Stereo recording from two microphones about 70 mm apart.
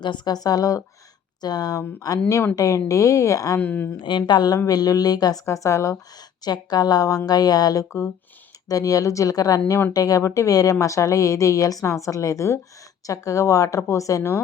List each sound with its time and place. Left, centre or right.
0.0 s a woman's voice: left
1.4 s a woman's voice: left
2.6 s speech: left
3.6 s speech: left
4.3 s a woman's voice: left
4.5 s a woman's voice: left
5.5 s speech: left
6.4 s a woman's voice: left